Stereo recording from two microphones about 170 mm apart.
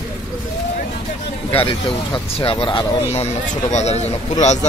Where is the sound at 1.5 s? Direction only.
35° left (ahead or behind).